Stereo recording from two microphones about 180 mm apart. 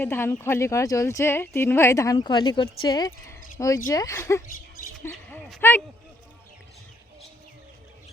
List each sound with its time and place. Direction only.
0.0 s speech: 15° left (ahead or behind)